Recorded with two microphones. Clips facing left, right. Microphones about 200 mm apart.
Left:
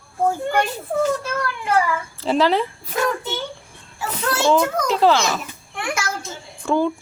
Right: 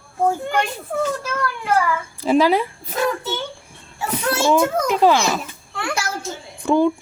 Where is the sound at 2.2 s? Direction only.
10° right (ahead or behind).